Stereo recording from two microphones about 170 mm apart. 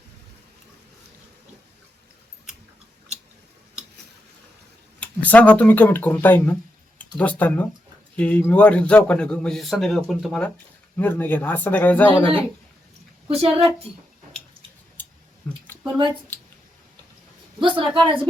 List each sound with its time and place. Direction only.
4.9 s a man's voice: 10° left (ahead or behind)
13.2 s a woman's voice: 35° right (ahead or behind)
15.4 s a sound: 10° left (ahead or behind)
17.6 s a woman's voice: 30° right (ahead or behind)